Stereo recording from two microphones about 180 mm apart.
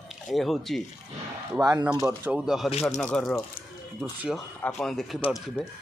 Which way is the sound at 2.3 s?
Centre (ahead or behind).